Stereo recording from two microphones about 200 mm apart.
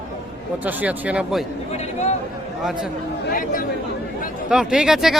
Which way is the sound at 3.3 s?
45° left (ahead or behind).